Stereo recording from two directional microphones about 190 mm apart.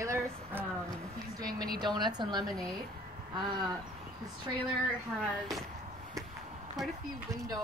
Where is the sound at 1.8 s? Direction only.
25° right (ahead or behind).